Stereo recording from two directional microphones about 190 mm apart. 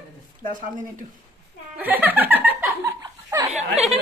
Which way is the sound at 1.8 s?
10° right (ahead or behind).